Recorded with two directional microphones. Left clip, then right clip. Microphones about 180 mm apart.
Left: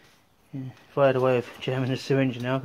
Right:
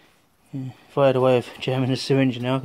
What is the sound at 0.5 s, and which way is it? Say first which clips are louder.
Speech: right 4 dB; 40° right (ahead or behind).